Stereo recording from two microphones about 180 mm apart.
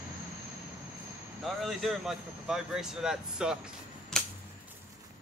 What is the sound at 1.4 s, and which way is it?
Speech, centre (ahead or behind).